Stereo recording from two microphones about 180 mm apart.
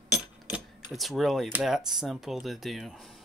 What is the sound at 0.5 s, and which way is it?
Speech, centre (ahead or behind).